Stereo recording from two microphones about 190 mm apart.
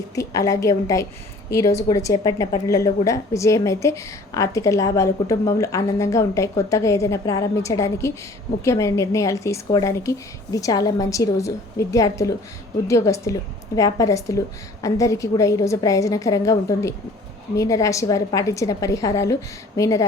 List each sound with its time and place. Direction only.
0.2 s a woman's voice: 15° left (ahead or behind)